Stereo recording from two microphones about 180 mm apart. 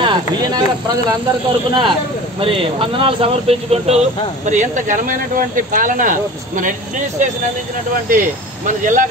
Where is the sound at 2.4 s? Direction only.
30° right (ahead or behind).